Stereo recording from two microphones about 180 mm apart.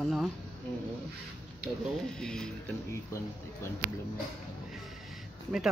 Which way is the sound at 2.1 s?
5° left (ahead or behind).